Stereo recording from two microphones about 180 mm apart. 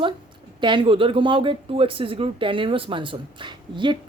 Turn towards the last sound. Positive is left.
turn(degrees=-25)  # may be behind; listen again after turning